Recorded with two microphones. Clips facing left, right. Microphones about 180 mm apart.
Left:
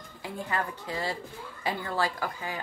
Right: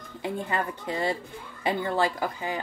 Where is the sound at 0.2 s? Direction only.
20° right (ahead or behind).